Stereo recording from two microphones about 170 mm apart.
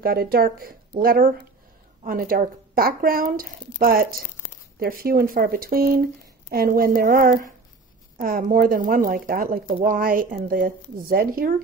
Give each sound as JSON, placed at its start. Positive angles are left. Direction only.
{"t": 0.0, "sound": "speech", "side_deg": -65}